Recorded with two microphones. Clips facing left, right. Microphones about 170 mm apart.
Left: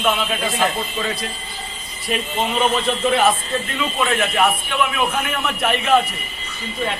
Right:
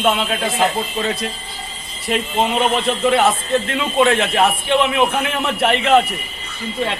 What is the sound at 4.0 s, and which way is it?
A man's voice, 25° right (ahead or behind).